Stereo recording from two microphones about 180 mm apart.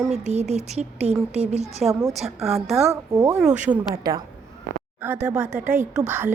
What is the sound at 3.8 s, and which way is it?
Speech, 25° right (ahead or behind).